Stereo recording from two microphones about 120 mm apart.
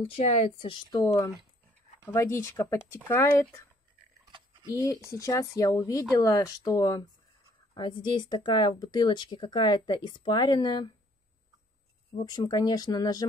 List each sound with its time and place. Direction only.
0.0 s speech: 60° left (ahead or behind)
0.6 s speech: 45° left (ahead or behind)
2.1 s speech: 20° left (ahead or behind)
5.1 s speech: 25° left (ahead or behind)
12.3 s speech: 35° left (ahead or behind)